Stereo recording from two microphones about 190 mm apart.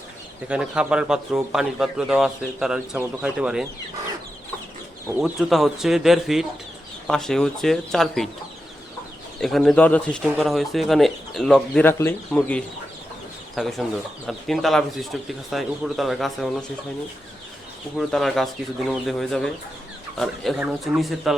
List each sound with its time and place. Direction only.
0.4 s speech: 5° right (ahead or behind)
5.0 s speech: 5° right (ahead or behind)
9.4 s speech: centre (ahead or behind)
17.9 s speech: centre (ahead or behind)